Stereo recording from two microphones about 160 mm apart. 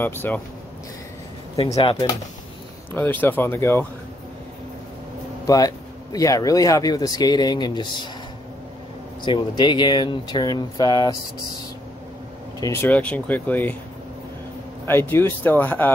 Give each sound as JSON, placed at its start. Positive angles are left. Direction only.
{"t": 0.0, "sound": "speech", "side_deg": 15}
{"t": 1.6, "sound": "speech", "side_deg": 35}
{"t": 2.9, "sound": "speech", "side_deg": 10}
{"t": 5.5, "sound": "speech", "side_deg": 20}
{"t": 9.2, "sound": "speech", "side_deg": 30}
{"t": 12.5, "sound": "speech", "side_deg": 20}
{"t": 12.8, "sound": "speech", "side_deg": 10}
{"t": 14.9, "sound": "speech", "side_deg": 15}